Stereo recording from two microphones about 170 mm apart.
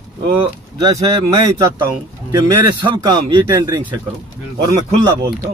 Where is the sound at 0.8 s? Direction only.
20° right (ahead or behind).